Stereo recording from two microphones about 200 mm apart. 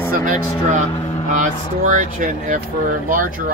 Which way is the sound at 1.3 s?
40° right (ahead or behind).